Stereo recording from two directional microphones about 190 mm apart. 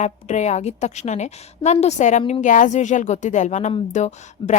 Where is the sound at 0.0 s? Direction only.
40° left (ahead or behind).